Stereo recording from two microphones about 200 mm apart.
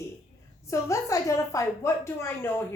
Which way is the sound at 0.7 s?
15° left (ahead or behind).